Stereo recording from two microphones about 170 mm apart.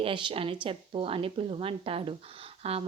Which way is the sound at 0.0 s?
30° right (ahead or behind).